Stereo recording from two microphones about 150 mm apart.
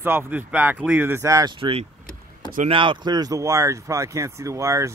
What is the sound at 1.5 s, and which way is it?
Speech, 40° right (ahead or behind).